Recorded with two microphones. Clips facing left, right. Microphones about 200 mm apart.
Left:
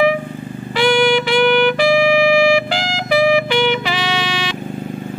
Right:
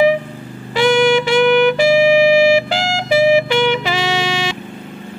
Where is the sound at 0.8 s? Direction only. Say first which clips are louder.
Right 2 dB; 25° right (ahead or behind).